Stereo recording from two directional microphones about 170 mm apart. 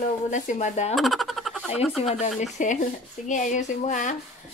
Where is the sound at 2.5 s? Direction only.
45° left (ahead or behind).